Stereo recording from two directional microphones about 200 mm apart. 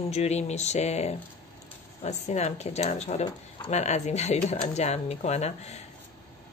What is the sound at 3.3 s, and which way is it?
Speech, 20° left (ahead or behind).